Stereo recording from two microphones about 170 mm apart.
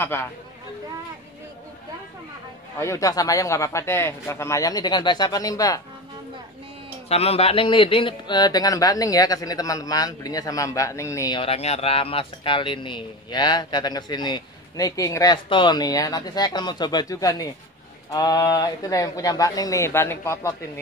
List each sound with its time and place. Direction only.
2.8 s speech: 20° left (ahead or behind)
7.1 s speech: 35° left (ahead or behind); by 11.3 s 15° left (ahead or behind)
11.3 s speech: 35° left (ahead or behind); by 20.5 s 15° left (ahead or behind)